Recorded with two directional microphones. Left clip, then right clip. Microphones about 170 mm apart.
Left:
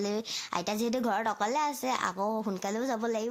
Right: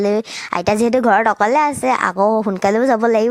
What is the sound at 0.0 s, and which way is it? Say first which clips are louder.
A woman's voice: right 15 dB; 50° right (ahead or behind).